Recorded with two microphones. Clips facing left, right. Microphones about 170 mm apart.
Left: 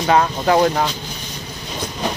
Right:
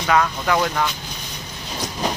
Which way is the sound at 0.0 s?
30° left (ahead or behind).